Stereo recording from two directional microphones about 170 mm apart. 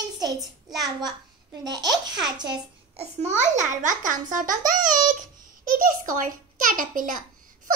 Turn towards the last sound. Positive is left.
turn(degrees=-55)  # may be behind; listen again after turning